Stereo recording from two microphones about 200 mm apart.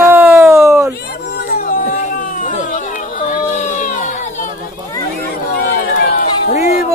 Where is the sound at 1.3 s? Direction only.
55° left (ahead or behind).